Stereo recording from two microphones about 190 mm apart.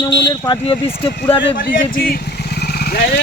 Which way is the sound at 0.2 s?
20° left (ahead or behind).